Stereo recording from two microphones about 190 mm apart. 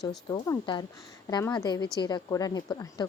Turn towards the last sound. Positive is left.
turn(degrees=20)  # may be behind; listen again after turning